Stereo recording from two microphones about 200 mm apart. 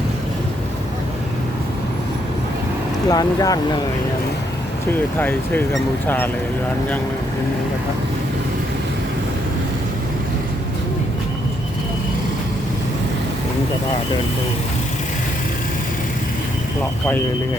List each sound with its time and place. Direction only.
3.1 s speech: 20° left (ahead or behind)
6.1 s speech: 10° left (ahead or behind)